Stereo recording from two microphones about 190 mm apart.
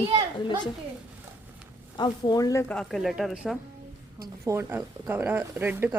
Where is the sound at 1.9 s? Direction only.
20° left (ahead or behind).